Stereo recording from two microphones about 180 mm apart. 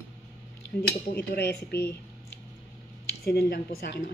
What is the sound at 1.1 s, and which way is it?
Speech, 65° left (ahead or behind).